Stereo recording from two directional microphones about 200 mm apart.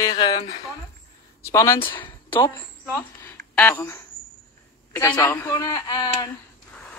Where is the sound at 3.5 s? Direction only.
10° left (ahead or behind).